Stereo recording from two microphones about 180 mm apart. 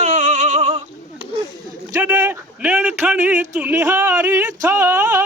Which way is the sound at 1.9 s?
15° right (ahead or behind).